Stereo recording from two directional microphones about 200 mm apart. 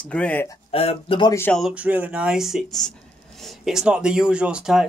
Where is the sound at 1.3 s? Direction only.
10° left (ahead or behind).